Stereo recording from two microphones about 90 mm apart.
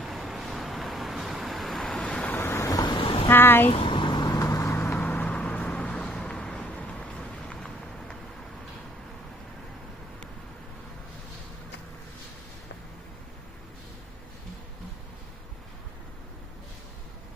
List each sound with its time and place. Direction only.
0.3 s vehicle: centre (ahead or behind)
2.0 s vehicle: 15° left (ahead or behind)
2.4 s vehicle: 30° left (ahead or behind)
2.8 s a sound: 70° left (ahead or behind)
3.2 s speech: 25° left (ahead or behind)
3.7 s vehicle: 75° left (ahead or behind); by 8.1 s 10° left (ahead or behind)